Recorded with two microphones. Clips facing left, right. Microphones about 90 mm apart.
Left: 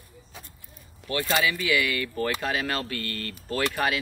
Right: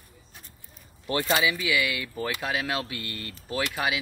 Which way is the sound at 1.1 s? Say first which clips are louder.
Right 1 dB; 20° right (ahead or behind).